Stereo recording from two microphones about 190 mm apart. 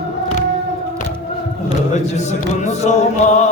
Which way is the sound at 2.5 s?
35° left (ahead or behind).